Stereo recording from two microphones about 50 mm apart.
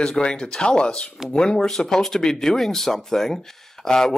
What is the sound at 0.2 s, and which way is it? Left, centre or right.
Speech, centre.